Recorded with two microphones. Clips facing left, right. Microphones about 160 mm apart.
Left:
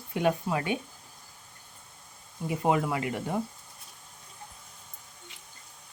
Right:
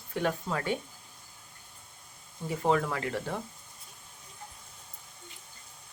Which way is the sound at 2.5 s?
10° left (ahead or behind).